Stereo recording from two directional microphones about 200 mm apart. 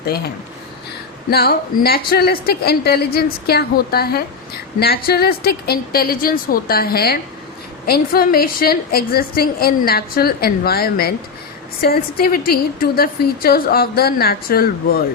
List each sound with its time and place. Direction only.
1.3 s a woman's voice: 50° left (ahead or behind)